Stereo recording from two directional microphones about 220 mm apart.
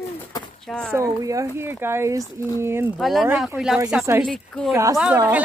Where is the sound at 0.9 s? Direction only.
15° right (ahead or behind).